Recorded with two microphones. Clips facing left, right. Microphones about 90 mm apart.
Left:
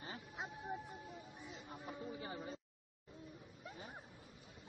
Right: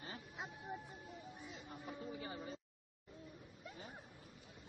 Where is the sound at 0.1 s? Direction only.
20° left (ahead or behind).